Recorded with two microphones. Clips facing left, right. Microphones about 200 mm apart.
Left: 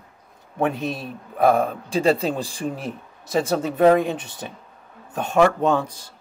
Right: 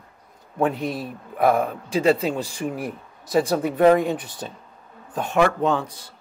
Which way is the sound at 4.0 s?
20° left (ahead or behind).